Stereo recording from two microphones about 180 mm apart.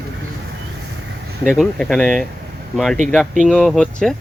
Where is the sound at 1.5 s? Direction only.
Centre (ahead or behind).